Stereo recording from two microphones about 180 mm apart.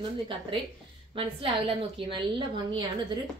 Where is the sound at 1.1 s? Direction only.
30° right (ahead or behind).